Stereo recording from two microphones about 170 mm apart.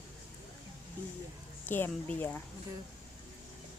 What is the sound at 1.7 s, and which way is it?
Speech, 10° left (ahead or behind).